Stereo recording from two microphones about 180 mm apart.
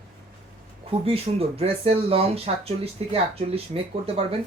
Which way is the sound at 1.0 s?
30° right (ahead or behind).